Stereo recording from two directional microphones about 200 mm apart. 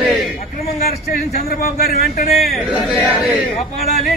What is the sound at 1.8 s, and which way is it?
Speech, 50° left (ahead or behind).